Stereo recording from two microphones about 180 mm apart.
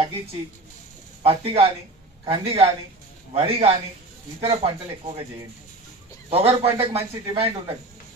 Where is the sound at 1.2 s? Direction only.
35° right (ahead or behind).